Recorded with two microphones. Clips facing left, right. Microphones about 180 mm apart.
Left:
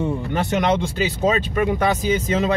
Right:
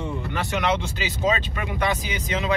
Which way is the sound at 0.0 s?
45° left (ahead or behind).